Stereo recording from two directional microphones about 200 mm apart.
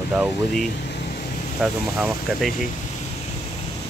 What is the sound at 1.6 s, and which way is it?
Speech, centre (ahead or behind).